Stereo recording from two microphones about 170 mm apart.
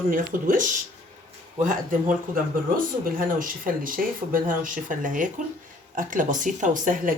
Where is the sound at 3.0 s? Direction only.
55° right (ahead or behind).